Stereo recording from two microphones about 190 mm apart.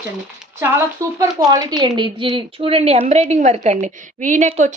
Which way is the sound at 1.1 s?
20° right (ahead or behind).